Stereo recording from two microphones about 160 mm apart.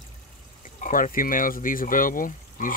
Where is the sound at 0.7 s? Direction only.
55° left (ahead or behind).